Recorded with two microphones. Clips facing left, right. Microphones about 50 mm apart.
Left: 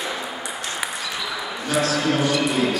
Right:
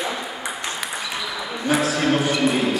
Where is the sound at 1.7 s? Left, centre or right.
Right.